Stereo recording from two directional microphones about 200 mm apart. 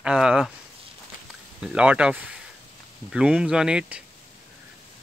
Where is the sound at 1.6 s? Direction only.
5° right (ahead or behind).